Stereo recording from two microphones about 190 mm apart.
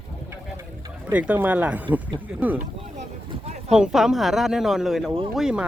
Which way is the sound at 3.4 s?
35° right (ahead or behind).